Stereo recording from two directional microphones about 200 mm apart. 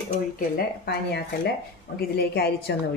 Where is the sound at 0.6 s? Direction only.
50° left (ahead or behind).